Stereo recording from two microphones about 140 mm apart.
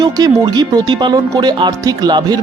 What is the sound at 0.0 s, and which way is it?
Speech, 30° right (ahead or behind).